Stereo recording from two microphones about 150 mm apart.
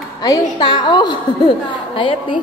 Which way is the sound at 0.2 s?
25° left (ahead or behind).